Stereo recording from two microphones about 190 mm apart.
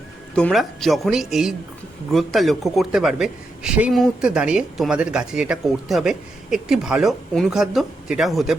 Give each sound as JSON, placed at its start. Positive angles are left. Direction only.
{"t": 0.3, "sound": "speech", "side_deg": 0}